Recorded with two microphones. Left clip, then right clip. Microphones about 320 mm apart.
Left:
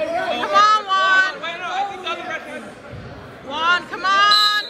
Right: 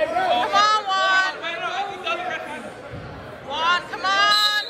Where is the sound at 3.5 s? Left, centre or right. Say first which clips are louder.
Left 2 dB; centre.